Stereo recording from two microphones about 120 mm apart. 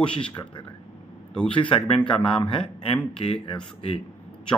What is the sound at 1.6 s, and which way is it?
A man's voice, 45° left (ahead or behind).